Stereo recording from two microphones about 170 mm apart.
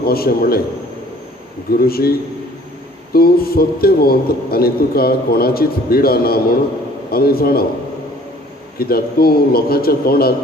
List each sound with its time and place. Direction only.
0.0 s a man's voice: 65° left (ahead or behind)
1.7 s a man's voice: 60° left (ahead or behind)
8.8 s a man's voice: 65° left (ahead or behind)